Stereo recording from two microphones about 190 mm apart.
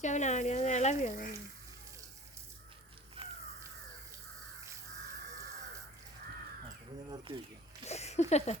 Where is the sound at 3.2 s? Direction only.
30° right (ahead or behind).